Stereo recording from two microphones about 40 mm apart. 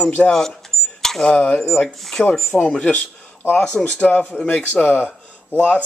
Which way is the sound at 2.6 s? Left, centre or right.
Left.